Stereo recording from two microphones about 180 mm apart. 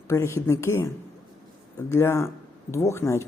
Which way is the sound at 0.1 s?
15° left (ahead or behind).